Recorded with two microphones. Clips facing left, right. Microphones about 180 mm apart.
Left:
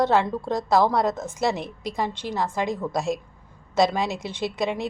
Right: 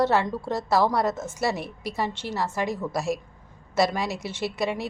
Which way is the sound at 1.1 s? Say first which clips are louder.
Left 1 dB; 5° right (ahead or behind).